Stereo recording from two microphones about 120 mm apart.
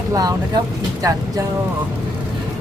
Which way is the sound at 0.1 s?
30° right (ahead or behind).